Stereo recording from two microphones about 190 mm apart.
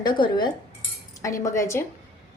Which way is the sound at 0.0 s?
25° left (ahead or behind).